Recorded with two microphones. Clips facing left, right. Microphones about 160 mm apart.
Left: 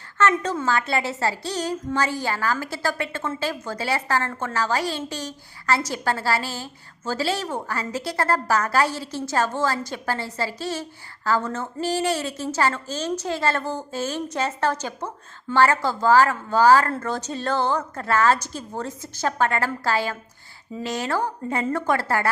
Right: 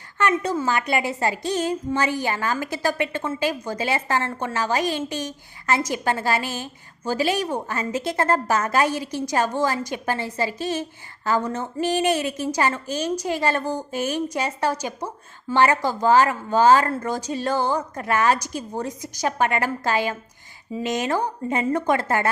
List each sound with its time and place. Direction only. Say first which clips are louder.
0.2 s a woman's voice: even; 10° right (ahead or behind)